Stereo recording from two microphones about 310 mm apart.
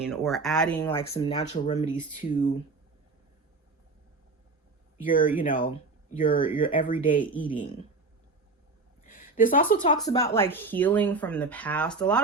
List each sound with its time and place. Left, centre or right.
0.0 s speech: centre
1.0 s speech: centre
5.0 s speech: left
9.0 s a sound: left
9.7 s speech: left
10.0 s speech: centre